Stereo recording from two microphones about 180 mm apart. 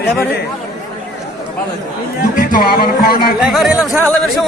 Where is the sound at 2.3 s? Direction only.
50° left (ahead or behind).